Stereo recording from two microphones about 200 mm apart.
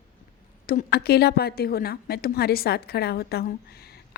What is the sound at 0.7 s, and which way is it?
A woman's voice, 50° left (ahead or behind).